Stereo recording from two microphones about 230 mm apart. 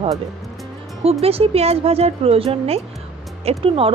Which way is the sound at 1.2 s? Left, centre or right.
Right.